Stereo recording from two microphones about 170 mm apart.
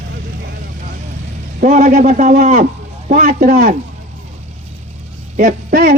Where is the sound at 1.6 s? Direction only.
45° right (ahead or behind).